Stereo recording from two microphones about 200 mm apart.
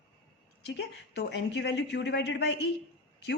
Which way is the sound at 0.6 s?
60° left (ahead or behind).